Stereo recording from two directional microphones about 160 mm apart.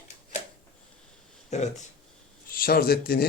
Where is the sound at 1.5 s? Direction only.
45° left (ahead or behind).